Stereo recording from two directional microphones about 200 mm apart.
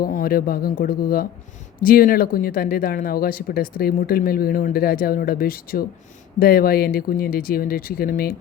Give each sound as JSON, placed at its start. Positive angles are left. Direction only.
{"t": 0.0, "sound": "speech", "side_deg": 45}